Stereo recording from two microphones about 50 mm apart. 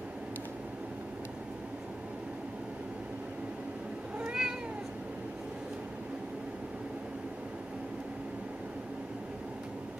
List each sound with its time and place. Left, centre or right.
4.2 s cat: centre